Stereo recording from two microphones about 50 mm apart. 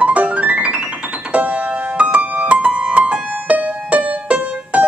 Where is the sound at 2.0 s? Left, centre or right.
Right.